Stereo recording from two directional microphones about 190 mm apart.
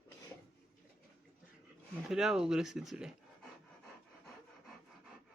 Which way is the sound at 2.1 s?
5° right (ahead or behind).